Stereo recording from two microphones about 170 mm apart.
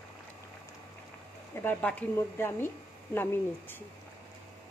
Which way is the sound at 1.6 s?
10° left (ahead or behind).